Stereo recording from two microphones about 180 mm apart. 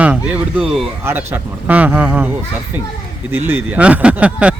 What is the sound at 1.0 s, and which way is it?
Speech, 15° right (ahead or behind).